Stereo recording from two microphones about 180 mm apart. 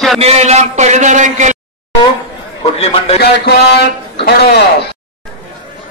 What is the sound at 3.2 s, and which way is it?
A man's voice, 65° left (ahead or behind).